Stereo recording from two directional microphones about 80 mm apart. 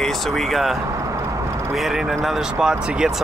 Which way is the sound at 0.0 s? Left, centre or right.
Centre.